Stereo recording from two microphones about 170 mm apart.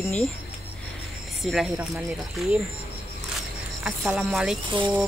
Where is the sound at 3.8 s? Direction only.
5° right (ahead or behind).